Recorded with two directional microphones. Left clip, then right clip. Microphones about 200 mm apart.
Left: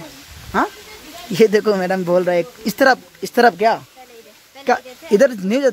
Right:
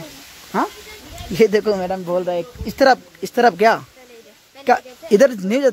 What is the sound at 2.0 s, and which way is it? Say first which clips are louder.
Speech: left 5 dB; 30° left (ahead or behind).